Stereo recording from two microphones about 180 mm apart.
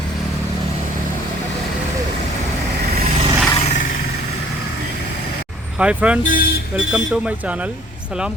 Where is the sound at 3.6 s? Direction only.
45° left (ahead or behind).